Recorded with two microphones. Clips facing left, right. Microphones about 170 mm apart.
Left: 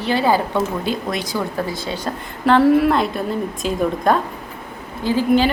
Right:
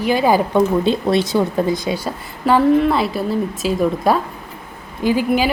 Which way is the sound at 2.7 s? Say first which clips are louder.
Even; centre (ahead or behind).